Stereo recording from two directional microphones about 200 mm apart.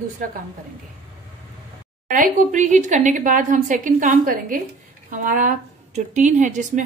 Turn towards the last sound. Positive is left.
turn(degrees=-40)  # may be behind; listen again after turning